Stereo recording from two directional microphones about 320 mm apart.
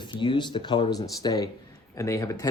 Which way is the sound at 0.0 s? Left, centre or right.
Centre.